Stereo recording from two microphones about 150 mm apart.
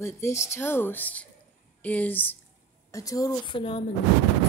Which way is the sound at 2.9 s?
25° left (ahead or behind).